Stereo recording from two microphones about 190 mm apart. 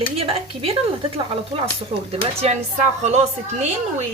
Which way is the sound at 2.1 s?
35° right (ahead or behind).